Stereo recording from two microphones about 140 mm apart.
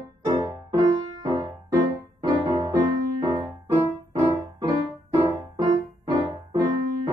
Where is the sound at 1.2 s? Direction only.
30° right (ahead or behind).